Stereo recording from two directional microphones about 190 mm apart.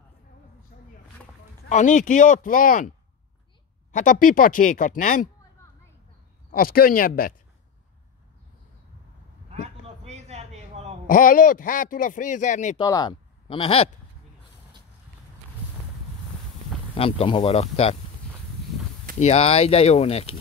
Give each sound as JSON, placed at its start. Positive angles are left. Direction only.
{"t": 1.7, "sound": "a man's voice", "side_deg": 40}
{"t": 3.9, "sound": "a man's voice", "side_deg": 45}
{"t": 6.5, "sound": "a man's voice", "side_deg": 50}
{"t": 10.0, "sound": "a sound", "side_deg": -35}
{"t": 11.1, "sound": "a man's voice", "side_deg": 45}
{"t": 12.7, "sound": "speech", "side_deg": 20}
{"t": 16.9, "sound": "speech", "side_deg": 30}
{"t": 19.1, "sound": "speech", "side_deg": 30}